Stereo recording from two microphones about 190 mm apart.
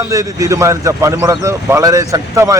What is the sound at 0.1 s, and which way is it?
A man's voice, 15° right (ahead or behind).